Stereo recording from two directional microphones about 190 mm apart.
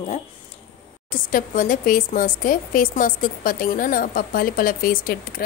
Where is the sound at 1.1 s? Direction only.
45° left (ahead or behind).